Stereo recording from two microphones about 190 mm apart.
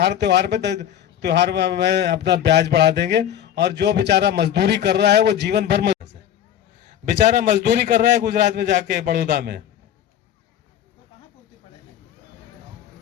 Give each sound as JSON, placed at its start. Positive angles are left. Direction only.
{"t": 0.0, "sound": "a man's voice", "side_deg": -60}
{"t": 7.1, "sound": "a man's voice", "side_deg": -40}
{"t": 7.5, "sound": "a man's voice", "side_deg": -60}
{"t": 8.7, "sound": "a man's voice", "side_deg": -45}